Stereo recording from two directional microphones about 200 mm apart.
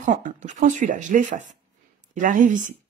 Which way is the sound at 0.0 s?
40° right (ahead or behind).